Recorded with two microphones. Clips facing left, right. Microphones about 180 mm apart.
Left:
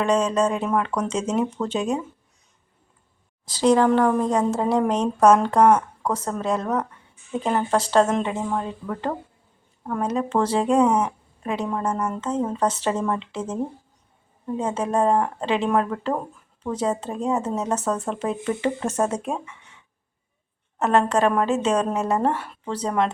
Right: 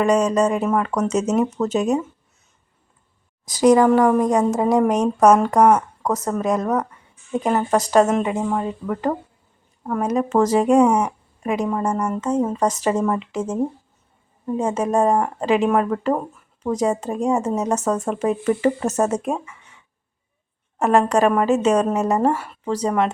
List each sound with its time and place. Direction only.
0.0 s speech: 10° right (ahead or behind)
3.4 s speech: 10° right (ahead or behind)
20.7 s speech: 10° right (ahead or behind)